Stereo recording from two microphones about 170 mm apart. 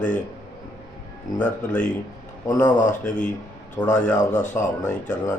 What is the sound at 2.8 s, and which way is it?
Speech, 50° left (ahead or behind).